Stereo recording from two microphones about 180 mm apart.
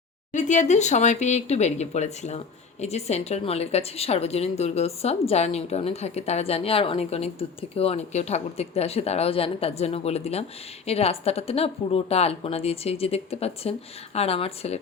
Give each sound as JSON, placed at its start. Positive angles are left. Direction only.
{"t": 0.3, "sound": "speech", "side_deg": 40}